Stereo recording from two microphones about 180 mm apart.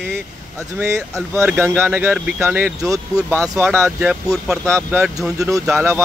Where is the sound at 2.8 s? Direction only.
20° right (ahead or behind).